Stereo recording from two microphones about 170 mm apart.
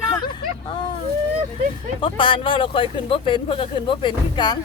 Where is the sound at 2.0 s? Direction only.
30° left (ahead or behind).